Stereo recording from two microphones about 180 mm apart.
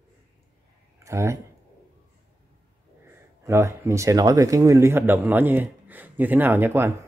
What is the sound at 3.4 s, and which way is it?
A man's voice, 15° right (ahead or behind).